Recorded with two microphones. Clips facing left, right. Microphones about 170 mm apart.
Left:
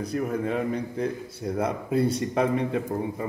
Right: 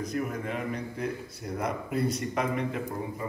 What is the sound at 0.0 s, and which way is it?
A man's voice, 30° left (ahead or behind).